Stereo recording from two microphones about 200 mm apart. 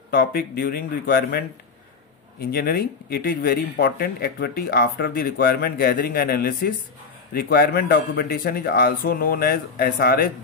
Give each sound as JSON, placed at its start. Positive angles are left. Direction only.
{"t": 0.1, "sound": "speech", "side_deg": 45}
{"t": 2.4, "sound": "speech", "side_deg": 50}